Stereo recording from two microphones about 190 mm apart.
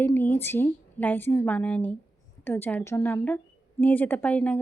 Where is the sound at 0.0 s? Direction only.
10° left (ahead or behind).